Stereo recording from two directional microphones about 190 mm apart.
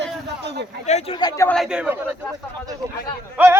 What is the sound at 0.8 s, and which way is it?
Speech, 35° left (ahead or behind).